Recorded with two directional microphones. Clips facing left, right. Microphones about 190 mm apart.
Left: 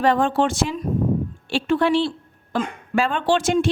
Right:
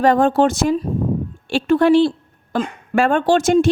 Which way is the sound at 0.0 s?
40° right (ahead or behind).